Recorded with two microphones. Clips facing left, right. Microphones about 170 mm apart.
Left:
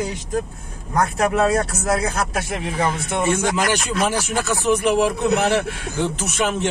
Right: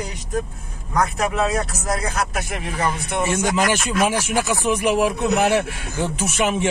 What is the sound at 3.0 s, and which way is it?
Speech, 5° right (ahead or behind).